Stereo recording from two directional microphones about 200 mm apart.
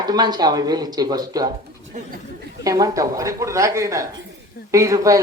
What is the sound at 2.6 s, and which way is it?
Speech, 15° right (ahead or behind).